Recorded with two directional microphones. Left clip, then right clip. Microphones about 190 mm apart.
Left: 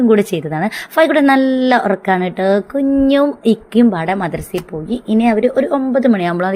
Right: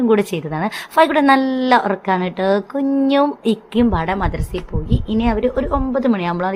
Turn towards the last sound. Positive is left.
turn(degrees=15)  # may be behind; listen again after turning